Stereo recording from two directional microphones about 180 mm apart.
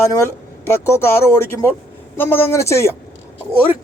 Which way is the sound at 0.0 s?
15° left (ahead or behind).